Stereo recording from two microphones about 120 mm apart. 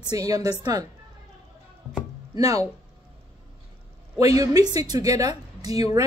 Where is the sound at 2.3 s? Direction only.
30° right (ahead or behind).